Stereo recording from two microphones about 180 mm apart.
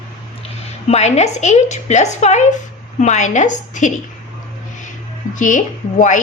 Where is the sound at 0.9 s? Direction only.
40° left (ahead or behind).